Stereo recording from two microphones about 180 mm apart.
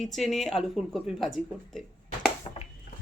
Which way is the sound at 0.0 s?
Centre (ahead or behind).